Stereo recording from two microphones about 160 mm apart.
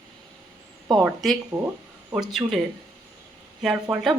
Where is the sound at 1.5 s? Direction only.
15° right (ahead or behind).